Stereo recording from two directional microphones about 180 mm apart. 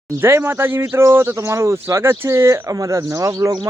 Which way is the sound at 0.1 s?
15° right (ahead or behind).